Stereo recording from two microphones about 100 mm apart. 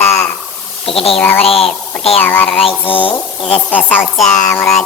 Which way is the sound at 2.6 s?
60° left (ahead or behind).